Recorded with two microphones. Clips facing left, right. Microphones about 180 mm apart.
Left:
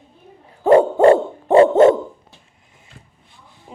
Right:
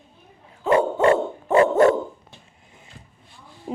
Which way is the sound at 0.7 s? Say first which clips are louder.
Left 7 dB; 35° left (ahead or behind).